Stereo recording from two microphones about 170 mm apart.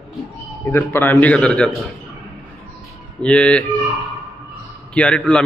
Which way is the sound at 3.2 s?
5° left (ahead or behind).